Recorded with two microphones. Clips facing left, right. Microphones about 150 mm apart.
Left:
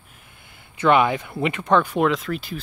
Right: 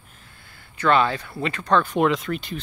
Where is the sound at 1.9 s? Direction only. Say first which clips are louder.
Even; centre (ahead or behind).